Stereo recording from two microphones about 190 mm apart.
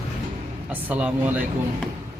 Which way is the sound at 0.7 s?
10° right (ahead or behind).